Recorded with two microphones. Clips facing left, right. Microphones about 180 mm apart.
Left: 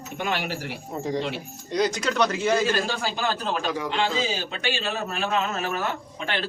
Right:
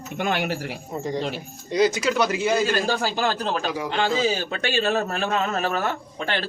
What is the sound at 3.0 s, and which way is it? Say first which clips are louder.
A man's voice: right 3 dB; 40° right (ahead or behind).